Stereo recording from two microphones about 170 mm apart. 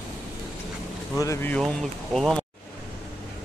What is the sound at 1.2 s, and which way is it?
Speech, 15° left (ahead or behind).